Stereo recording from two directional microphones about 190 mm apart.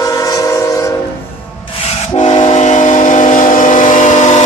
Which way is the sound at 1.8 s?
35° left (ahead or behind).